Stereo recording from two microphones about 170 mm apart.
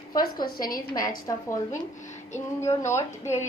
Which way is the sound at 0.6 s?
55° left (ahead or behind).